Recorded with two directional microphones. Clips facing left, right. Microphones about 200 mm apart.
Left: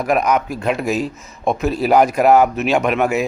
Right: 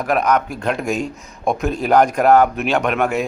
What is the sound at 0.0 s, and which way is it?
Speech, 10° left (ahead or behind).